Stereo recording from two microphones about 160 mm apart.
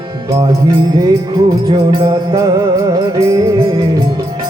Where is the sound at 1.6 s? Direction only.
25° right (ahead or behind).